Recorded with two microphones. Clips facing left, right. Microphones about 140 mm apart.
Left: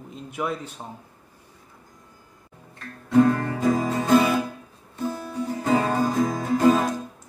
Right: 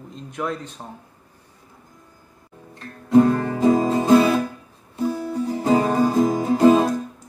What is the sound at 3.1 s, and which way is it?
Music, 25° right (ahead or behind).